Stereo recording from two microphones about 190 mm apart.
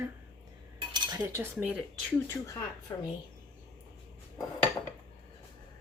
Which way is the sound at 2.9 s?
20° left (ahead or behind).